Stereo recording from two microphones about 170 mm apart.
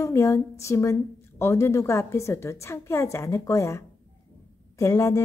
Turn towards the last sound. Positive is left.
turn(degrees=20)  # may be behind; listen again after turning